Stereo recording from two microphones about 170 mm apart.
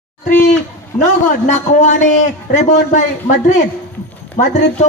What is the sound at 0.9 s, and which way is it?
A man's voice, 45° left (ahead or behind).